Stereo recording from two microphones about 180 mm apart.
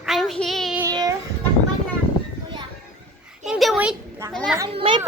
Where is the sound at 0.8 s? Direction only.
20° right (ahead or behind).